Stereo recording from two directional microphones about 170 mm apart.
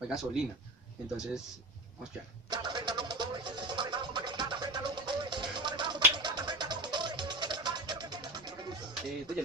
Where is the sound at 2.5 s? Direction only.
25° right (ahead or behind).